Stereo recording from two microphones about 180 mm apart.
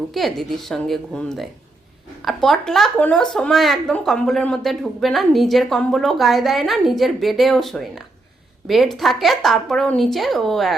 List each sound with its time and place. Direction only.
0.1 s speech: centre (ahead or behind)